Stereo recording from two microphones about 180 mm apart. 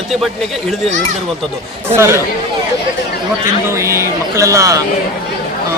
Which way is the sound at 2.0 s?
15° right (ahead or behind).